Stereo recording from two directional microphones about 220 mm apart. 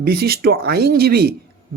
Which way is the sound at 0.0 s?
45° right (ahead or behind).